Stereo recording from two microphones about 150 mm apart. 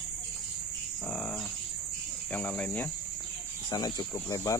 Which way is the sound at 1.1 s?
10° left (ahead or behind).